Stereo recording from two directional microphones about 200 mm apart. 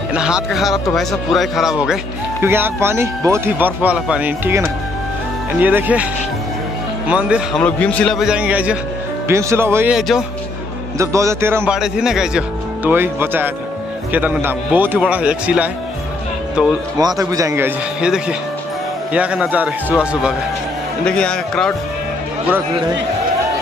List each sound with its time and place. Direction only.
0.1 s a man's voice: 5° right (ahead or behind)
7.1 s a man's voice: 5° right (ahead or behind)
7.6 s a man's voice: 5° left (ahead or behind)
11.0 s speech: 15° right (ahead or behind)
17.0 s a man's voice: 15° right (ahead or behind); by 21.7 s 5° left (ahead or behind)